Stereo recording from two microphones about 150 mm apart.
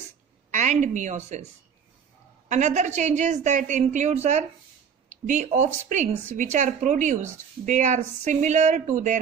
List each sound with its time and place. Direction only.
0.5 s a woman's voice: 55° right (ahead or behind)
2.4 s a woman's voice: 55° right (ahead or behind)